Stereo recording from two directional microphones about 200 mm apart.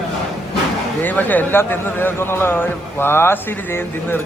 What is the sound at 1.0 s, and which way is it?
A man's voice, 10° left (ahead or behind).